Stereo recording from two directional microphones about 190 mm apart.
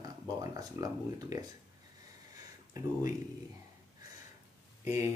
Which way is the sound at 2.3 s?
20° right (ahead or behind).